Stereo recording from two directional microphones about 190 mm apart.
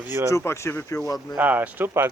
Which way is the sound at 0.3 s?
15° left (ahead or behind).